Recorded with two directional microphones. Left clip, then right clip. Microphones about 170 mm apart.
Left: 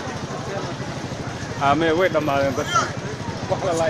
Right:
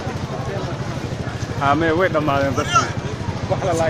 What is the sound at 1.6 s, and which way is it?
Speech, 20° left (ahead or behind).